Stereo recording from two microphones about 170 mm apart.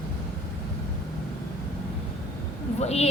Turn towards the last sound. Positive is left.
turn(degrees=40)  # may be behind; listen again after turning